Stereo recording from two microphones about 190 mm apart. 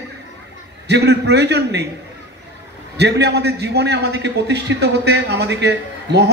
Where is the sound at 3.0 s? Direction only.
60° right (ahead or behind).